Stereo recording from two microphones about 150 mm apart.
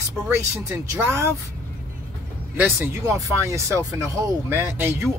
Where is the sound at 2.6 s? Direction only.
15° right (ahead or behind).